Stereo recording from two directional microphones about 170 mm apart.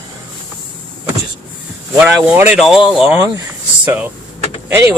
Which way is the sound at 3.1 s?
20° right (ahead or behind).